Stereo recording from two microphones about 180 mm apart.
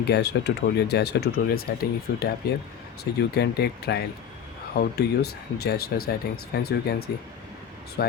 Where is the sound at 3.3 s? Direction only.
65° left (ahead or behind).